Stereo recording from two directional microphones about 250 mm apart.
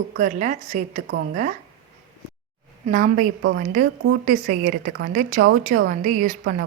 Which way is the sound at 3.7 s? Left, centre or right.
Right.